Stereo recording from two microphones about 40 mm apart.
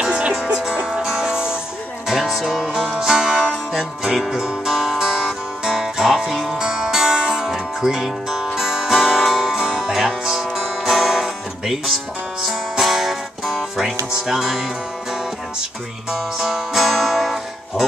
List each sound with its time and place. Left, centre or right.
0.0 s music: right
6.6 s music: centre
16.1 s music: centre